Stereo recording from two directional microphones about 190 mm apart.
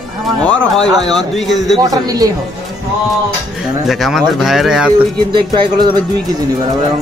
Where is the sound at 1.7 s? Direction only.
20° right (ahead or behind).